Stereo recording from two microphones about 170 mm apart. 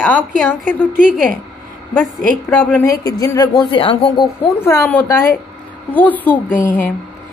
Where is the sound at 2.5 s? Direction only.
10° left (ahead or behind); by 4.1 s 30° left (ahead or behind).